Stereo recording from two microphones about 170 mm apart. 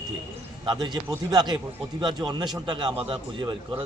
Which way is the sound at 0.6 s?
25° right (ahead or behind).